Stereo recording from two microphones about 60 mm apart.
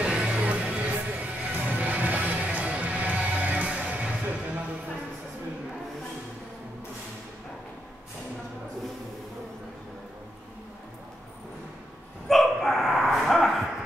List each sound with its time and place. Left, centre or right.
0.0 s music: centre
12.3 s dog: centre